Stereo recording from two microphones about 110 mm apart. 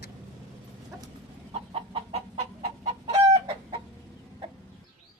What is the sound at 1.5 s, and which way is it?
Chicken, 65° right (ahead or behind).